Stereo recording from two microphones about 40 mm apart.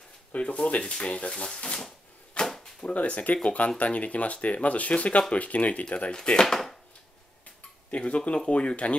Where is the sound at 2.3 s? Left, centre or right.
Left.